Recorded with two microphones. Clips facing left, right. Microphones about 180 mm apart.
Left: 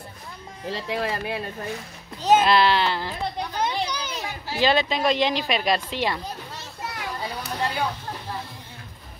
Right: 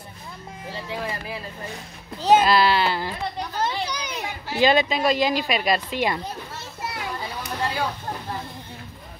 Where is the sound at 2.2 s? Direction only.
5° right (ahead or behind).